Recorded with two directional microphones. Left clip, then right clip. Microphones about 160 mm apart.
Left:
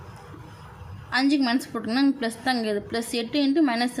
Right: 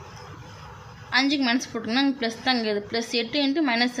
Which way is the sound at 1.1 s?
20° left (ahead or behind).